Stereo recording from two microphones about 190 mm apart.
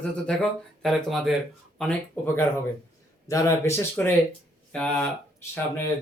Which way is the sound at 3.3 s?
15° left (ahead or behind).